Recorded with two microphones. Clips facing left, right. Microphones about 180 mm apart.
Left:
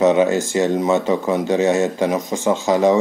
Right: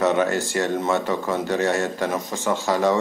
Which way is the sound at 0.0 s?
15° left (ahead or behind).